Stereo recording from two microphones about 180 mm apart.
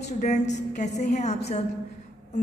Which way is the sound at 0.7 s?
40° left (ahead or behind).